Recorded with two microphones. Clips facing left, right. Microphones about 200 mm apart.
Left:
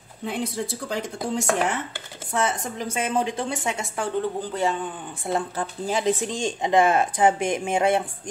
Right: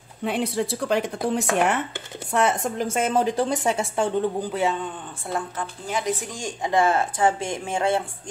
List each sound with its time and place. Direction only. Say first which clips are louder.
0.2 s speech: right 4 dB; 70° right (ahead or behind)
3.1 s speech: right 3 dB; 40° right (ahead or behind)
4.4 s a man's voice: right 1 dB; 5° right (ahead or behind)
5.3 s speech: left 3 dB; 20° left (ahead or behind)